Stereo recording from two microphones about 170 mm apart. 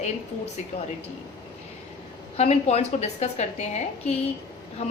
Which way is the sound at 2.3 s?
40° left (ahead or behind).